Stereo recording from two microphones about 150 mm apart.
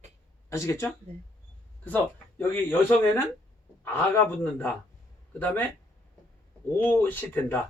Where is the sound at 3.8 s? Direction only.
10° left (ahead or behind).